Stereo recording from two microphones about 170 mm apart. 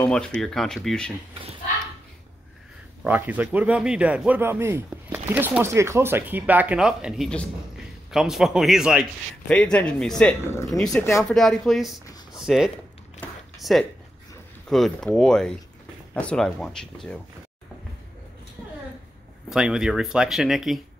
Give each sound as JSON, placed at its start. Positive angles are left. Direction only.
{"t": 0.1, "sound": "speech", "side_deg": 5}
{"t": 3.0, "sound": "speech", "side_deg": -10}
{"t": 9.5, "sound": "speech", "side_deg": 5}
{"t": 10.4, "sound": "speech", "side_deg": 15}
{"t": 10.7, "sound": "speech", "side_deg": 5}
{"t": 13.2, "sound": "a sound", "side_deg": 10}
{"t": 13.6, "sound": "speech", "side_deg": 0}
{"t": 19.5, "sound": "speech", "side_deg": -5}